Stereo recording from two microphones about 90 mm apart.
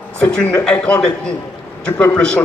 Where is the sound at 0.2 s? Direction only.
10° left (ahead or behind).